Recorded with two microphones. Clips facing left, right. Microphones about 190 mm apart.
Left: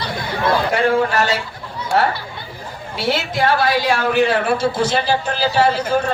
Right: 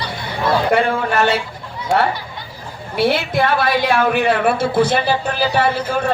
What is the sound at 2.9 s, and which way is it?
A woman's voice, 60° right (ahead or behind).